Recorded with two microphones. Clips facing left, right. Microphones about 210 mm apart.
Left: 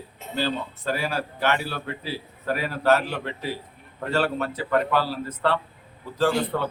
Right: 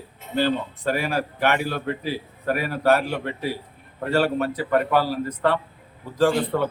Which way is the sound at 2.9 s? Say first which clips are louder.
Right 1 dB; 10° right (ahead or behind).